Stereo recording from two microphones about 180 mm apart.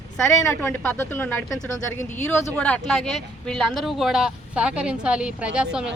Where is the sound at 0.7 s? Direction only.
10° left (ahead or behind); by 5.9 s 5° right (ahead or behind).